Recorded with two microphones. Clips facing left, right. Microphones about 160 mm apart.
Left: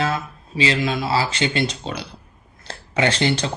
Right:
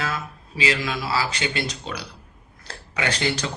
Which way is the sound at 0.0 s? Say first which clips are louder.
Left 6 dB; 25° left (ahead or behind).